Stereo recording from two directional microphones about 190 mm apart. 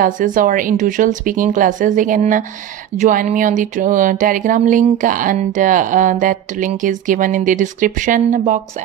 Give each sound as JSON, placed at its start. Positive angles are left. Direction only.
{"t": 0.0, "sound": "speech", "side_deg": -45}